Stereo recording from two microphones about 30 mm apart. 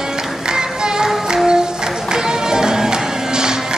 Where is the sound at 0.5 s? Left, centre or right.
Right.